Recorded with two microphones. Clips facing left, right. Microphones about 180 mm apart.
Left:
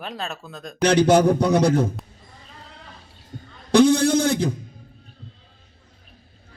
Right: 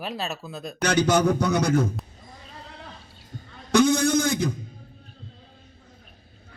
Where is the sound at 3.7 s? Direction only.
30° left (ahead or behind).